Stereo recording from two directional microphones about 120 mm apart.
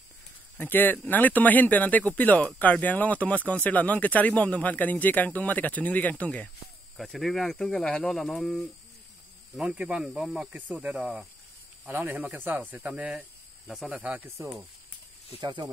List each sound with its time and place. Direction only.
0.6 s speech: 15° left (ahead or behind)
9.6 s speech: 10° right (ahead or behind)
15.4 s speech: 35° right (ahead or behind)